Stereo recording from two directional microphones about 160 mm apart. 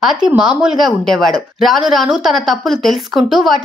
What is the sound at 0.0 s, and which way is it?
A woman's voice, 5° right (ahead or behind).